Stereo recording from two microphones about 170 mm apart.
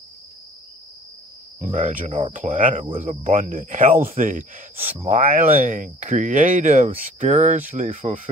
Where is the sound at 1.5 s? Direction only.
50° right (ahead or behind).